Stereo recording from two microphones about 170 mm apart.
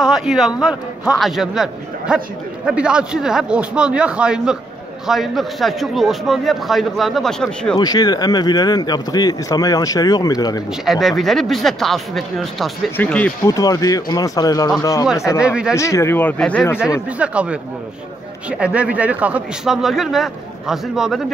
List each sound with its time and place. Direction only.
0.0 s a man's voice: 5° right (ahead or behind)
7.7 s speech: 25° left (ahead or behind)
10.9 s a man's voice: centre (ahead or behind)
13.5 s speech: 20° left (ahead or behind)
15.3 s a man's voice: 5° right (ahead or behind)
15.7 s speech: 15° left (ahead or behind)
17.2 s a man's voice: 5° right (ahead or behind)